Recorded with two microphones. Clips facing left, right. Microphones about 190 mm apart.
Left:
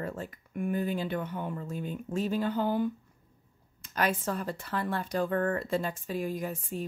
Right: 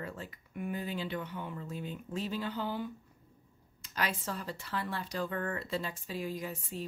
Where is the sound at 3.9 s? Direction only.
50° left (ahead or behind).